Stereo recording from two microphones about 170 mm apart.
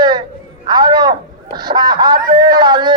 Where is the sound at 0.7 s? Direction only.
25° right (ahead or behind).